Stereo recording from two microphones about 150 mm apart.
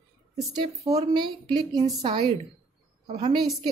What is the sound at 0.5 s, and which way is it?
A woman's voice, 25° right (ahead or behind).